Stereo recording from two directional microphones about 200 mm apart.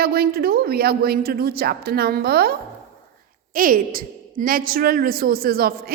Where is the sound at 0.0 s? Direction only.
50° right (ahead or behind).